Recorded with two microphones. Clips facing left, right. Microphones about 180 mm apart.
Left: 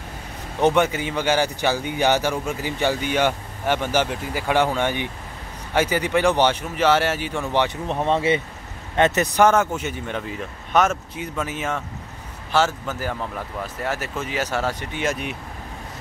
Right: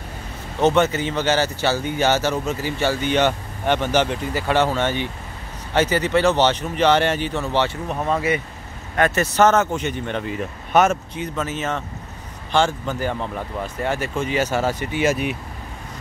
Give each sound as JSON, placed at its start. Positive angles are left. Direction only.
{"t": 0.6, "sound": "speech", "side_deg": 15}
{"t": 7.9, "sound": "speech", "side_deg": 25}
{"t": 11.1, "sound": "speech", "side_deg": 10}